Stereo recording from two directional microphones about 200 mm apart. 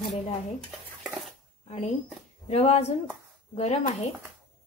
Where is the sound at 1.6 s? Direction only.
35° left (ahead or behind).